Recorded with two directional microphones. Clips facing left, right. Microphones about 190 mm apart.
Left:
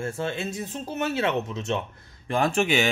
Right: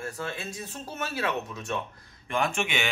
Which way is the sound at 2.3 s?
35° left (ahead or behind).